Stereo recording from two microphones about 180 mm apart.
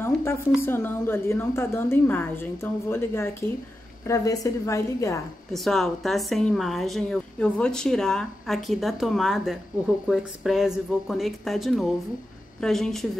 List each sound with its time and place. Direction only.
0.0 s a sound: 15° left (ahead or behind)
0.6 s a woman's voice: 10° left (ahead or behind)
5.5 s a woman's voice: centre (ahead or behind)